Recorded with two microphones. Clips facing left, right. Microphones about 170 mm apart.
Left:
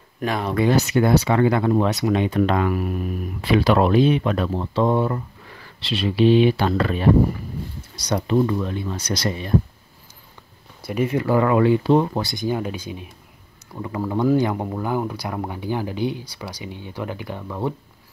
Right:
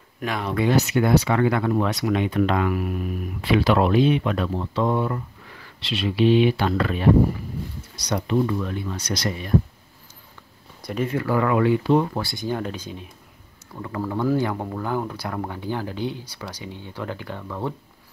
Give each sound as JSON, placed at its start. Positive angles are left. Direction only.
{"t": 0.2, "sound": "speech", "side_deg": 35}
{"t": 8.1, "sound": "speech", "side_deg": 35}
{"t": 10.8, "sound": "speech", "side_deg": 10}